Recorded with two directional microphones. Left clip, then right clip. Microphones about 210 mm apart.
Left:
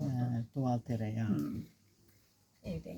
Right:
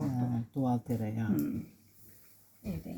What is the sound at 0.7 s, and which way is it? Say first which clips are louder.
Speech: right 3 dB; 40° left (ahead or behind).